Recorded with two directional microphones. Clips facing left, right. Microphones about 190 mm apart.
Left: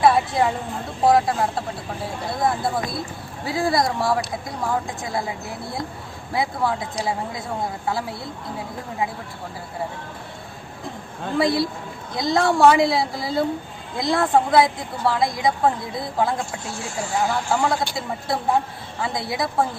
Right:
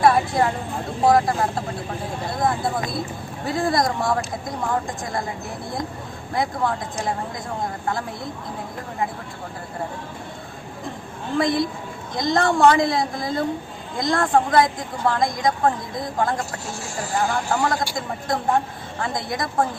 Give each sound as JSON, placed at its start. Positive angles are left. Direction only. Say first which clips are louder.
{"t": 0.0, "sound": "a woman's voice", "louder": "even", "side_deg": 5}
{"t": 6.3, "sound": "a woman's voice", "louder": "even", "side_deg": 5}
{"t": 11.4, "sound": "a woman's voice", "louder": "left 1 dB", "side_deg": -20}
{"t": 12.1, "sound": "a woman's voice", "louder": "even", "side_deg": 5}
{"t": 17.2, "sound": "a woman's voice", "louder": "even", "side_deg": 5}